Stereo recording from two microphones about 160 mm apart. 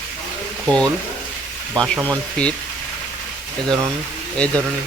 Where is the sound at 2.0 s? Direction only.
5° left (ahead or behind).